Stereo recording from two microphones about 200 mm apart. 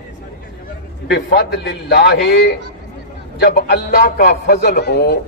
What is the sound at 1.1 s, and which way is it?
A man's voice, 55° left (ahead or behind).